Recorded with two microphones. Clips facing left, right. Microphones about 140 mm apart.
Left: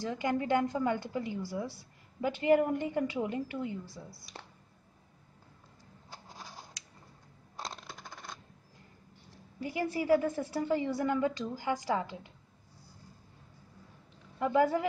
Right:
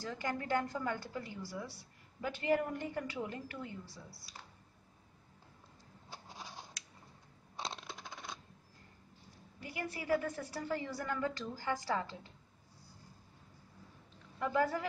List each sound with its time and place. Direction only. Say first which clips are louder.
0.0 s a woman's voice: left 7 dB; 15° left (ahead or behind)
6.2 s a sound: left 1 dB; centre (ahead or behind)
7.5 s coin: even; centre (ahead or behind)
9.6 s a woman's voice: left 9 dB; 25° left (ahead or behind)
14.4 s a woman's voice: left 6 dB; 20° left (ahead or behind)